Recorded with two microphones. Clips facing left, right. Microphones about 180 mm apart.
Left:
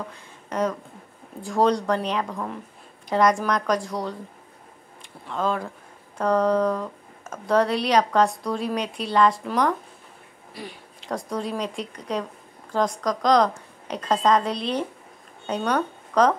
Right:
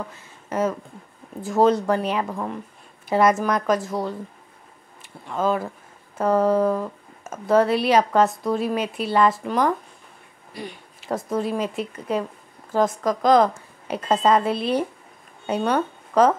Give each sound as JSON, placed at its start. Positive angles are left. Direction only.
{"t": 0.1, "sound": "speech", "side_deg": -5}
{"t": 5.3, "sound": "a woman's voice", "side_deg": -5}